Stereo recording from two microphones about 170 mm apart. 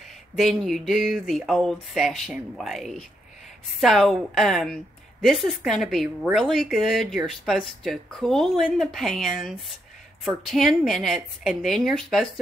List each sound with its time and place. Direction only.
0.4 s speech: centre (ahead or behind)